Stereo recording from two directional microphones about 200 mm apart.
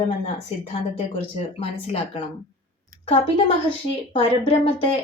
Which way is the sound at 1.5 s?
30° left (ahead or behind).